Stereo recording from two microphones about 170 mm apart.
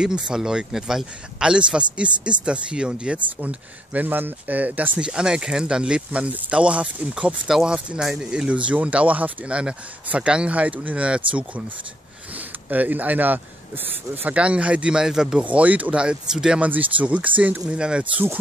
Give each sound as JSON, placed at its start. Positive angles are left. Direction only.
{"t": 0.0, "sound": "a man's voice", "side_deg": -5}
{"t": 12.4, "sound": "speech", "side_deg": -10}